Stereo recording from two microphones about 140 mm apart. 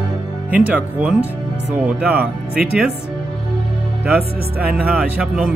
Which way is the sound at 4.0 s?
15° right (ahead or behind).